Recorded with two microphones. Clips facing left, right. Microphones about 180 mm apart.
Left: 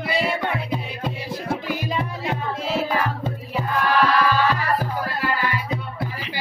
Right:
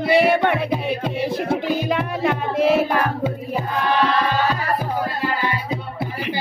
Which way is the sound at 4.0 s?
25° right (ahead or behind).